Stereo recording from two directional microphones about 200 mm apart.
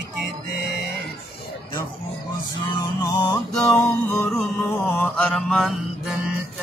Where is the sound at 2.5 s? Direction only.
20° left (ahead or behind).